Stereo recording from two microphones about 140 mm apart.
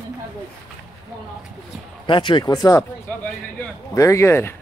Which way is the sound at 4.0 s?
20° left (ahead or behind).